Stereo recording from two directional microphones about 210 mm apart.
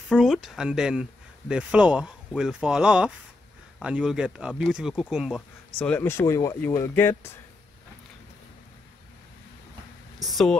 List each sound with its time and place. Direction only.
0.1 s speech: centre (ahead or behind)
10.2 s speech: centre (ahead or behind)